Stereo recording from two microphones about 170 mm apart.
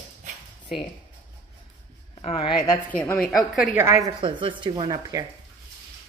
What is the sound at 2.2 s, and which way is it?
Speech, 30° left (ahead or behind).